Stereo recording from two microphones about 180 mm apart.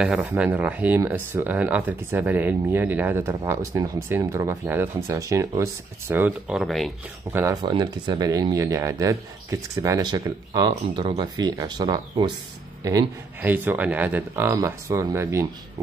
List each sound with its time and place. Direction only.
0.0 s speech: 5° right (ahead or behind)
7.3 s speech: 15° right (ahead or behind)
7.6 s speech: 25° right (ahead or behind)